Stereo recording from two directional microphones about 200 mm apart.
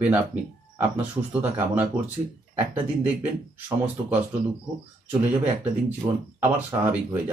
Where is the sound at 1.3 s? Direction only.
10° right (ahead or behind).